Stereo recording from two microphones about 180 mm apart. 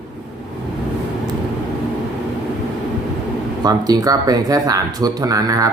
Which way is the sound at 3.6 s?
20° right (ahead or behind).